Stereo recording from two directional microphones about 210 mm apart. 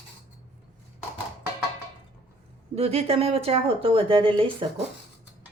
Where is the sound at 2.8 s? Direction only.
30° right (ahead or behind).